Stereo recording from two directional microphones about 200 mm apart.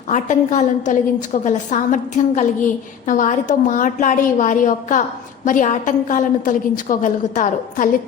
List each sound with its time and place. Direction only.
0.1 s a woman's voice: 40° left (ahead or behind)